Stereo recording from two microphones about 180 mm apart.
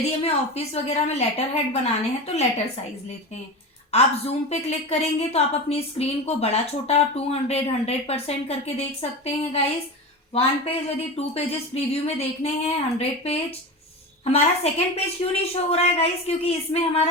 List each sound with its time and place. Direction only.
0.2 s a woman's voice: 35° left (ahead or behind)
3.9 s a woman's voice: 35° left (ahead or behind)